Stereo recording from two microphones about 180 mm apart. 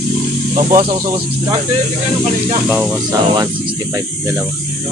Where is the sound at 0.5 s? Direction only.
50° right (ahead or behind).